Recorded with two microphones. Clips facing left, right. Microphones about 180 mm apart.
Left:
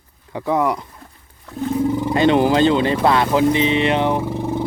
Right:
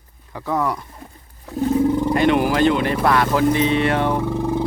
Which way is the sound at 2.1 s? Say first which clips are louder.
Left 2 dB; 25° left (ahead or behind).